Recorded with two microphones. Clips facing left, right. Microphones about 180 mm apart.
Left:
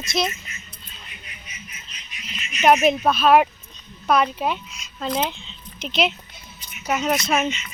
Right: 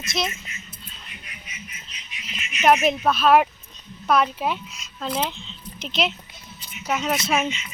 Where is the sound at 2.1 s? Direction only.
40° left (ahead or behind).